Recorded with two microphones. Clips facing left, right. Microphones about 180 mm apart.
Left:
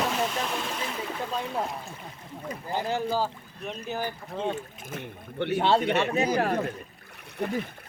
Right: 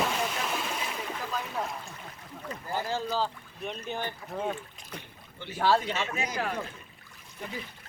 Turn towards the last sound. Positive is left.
turn(degrees=60)  # may be behind; listen again after turning